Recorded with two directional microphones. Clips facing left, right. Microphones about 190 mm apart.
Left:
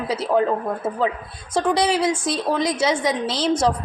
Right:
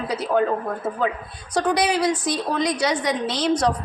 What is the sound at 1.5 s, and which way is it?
A woman's voice, 25° left (ahead or behind).